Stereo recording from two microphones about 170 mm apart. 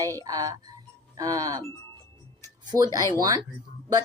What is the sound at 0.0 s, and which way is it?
Speech, 20° right (ahead or behind).